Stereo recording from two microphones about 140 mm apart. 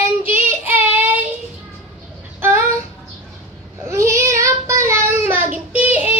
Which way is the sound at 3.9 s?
20° right (ahead or behind).